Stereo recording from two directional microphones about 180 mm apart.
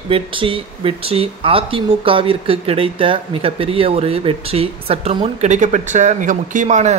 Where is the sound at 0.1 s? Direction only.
30° right (ahead or behind).